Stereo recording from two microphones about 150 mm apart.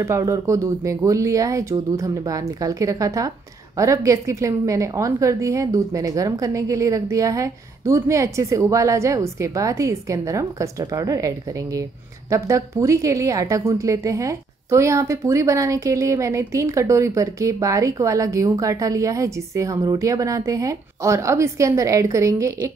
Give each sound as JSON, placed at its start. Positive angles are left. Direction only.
{"t": 0.0, "sound": "speech", "side_deg": -20}